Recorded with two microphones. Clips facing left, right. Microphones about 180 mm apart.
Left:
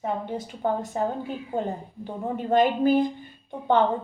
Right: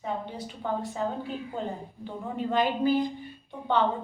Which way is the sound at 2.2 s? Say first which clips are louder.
Left 5 dB; 45° left (ahead or behind).